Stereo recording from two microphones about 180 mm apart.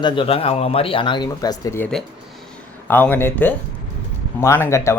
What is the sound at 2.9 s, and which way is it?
Speech, 10° left (ahead or behind).